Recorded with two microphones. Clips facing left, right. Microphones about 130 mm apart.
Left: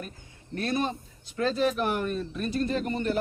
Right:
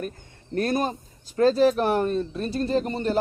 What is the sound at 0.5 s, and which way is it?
A man's voice, 45° right (ahead or behind).